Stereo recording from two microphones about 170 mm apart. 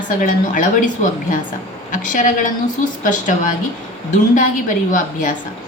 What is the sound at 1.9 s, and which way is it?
A woman's voice, 50° left (ahead or behind).